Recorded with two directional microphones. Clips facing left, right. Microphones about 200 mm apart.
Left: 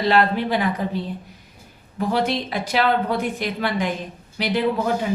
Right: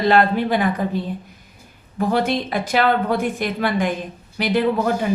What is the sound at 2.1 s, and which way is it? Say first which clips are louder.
A woman's voice: right 2 dB; 50° right (ahead or behind).